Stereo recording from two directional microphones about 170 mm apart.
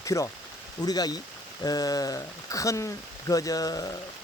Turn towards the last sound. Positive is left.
turn(degrees=20)  # may be behind; listen again after turning